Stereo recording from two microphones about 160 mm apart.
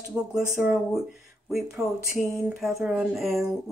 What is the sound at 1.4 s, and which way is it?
Speech, 5° right (ahead or behind).